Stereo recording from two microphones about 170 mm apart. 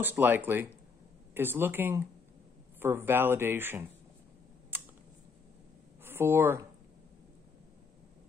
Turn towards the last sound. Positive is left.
turn(degrees=-15)  # may be behind; listen again after turning